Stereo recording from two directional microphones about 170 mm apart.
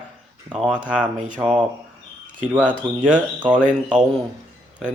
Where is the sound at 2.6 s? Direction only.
5° left (ahead or behind).